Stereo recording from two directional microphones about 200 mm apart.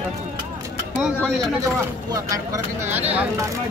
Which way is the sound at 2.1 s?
15° right (ahead or behind).